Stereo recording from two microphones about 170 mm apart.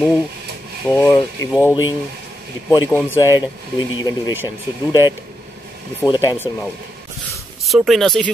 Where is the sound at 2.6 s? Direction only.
15° left (ahead or behind).